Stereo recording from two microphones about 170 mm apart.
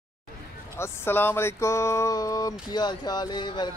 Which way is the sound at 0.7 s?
15° left (ahead or behind).